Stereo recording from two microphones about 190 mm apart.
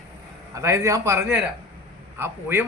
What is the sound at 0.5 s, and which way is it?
A man's voice, 15° right (ahead or behind).